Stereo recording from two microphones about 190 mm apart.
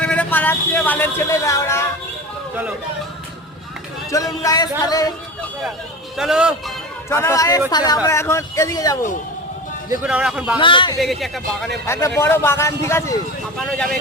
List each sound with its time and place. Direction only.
0.0 s speech: 5° left (ahead or behind)
4.1 s a man's voice: 15° left (ahead or behind)
6.1 s a man's voice: 5° right (ahead or behind)
7.1 s a man's voice: 15° left (ahead or behind)
10.0 s a man's voice: 5° right (ahead or behind)
10.6 s speech: 25° left (ahead or behind)
11.0 s a man's voice: centre (ahead or behind)
11.9 s a man's voice: 15° left (ahead or behind)
13.7 s a man's voice: 5° left (ahead or behind)